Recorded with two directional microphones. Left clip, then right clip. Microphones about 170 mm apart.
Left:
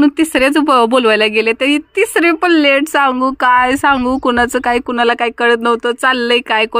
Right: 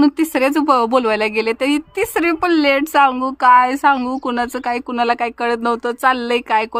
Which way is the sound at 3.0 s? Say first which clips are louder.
Left 1 dB; 25° left (ahead or behind).